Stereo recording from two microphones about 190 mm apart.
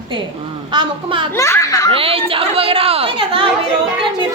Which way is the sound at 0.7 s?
25° right (ahead or behind).